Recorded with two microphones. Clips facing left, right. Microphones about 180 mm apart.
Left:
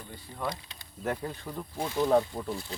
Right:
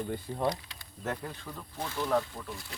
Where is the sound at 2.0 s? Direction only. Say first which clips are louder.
Left 5 dB; 30° left (ahead or behind).